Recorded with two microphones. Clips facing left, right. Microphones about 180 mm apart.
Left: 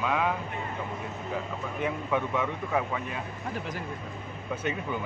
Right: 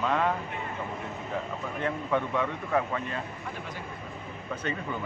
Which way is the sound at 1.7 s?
10° left (ahead or behind).